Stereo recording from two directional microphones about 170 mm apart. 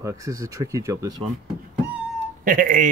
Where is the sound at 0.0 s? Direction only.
20° right (ahead or behind).